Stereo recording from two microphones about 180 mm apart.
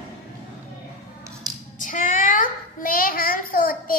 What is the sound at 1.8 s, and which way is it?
Child singing, 45° left (ahead or behind).